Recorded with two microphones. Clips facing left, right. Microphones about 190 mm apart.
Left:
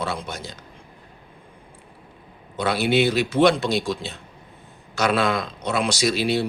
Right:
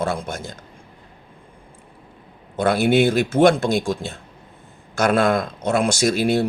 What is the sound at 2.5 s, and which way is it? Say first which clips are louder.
Speech: right 4 dB; 50° right (ahead or behind).